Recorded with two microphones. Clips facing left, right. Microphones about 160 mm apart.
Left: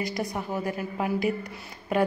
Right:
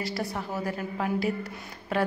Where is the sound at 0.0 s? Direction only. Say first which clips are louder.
Left 2 dB; 15° left (ahead or behind).